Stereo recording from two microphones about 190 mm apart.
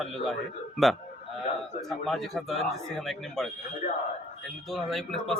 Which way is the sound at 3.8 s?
35° left (ahead or behind).